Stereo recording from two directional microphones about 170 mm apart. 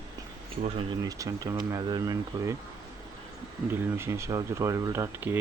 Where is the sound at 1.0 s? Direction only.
20° right (ahead or behind).